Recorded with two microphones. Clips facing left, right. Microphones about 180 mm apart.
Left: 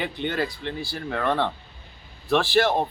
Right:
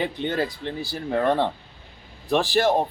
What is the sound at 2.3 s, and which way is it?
Speech, 40° right (ahead or behind).